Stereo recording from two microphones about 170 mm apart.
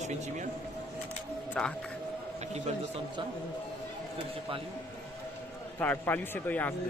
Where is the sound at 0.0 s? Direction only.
45° right (ahead or behind).